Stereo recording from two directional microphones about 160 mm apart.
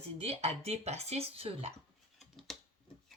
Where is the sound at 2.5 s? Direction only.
Centre (ahead or behind).